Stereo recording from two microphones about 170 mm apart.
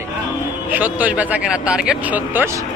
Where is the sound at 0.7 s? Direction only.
10° right (ahead or behind).